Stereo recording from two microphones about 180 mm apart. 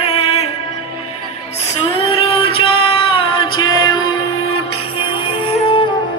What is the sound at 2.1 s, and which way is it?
Music, 30° left (ahead or behind).